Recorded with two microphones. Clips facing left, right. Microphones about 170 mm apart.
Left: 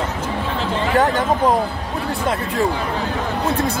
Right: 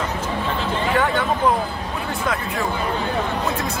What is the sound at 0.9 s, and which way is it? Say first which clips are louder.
Speech: left 5 dB; 40° left (ahead or behind).